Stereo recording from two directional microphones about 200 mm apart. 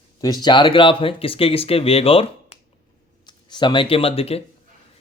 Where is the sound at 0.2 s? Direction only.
20° left (ahead or behind).